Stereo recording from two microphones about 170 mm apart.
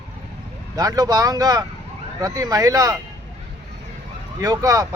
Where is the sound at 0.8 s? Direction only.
20° right (ahead or behind).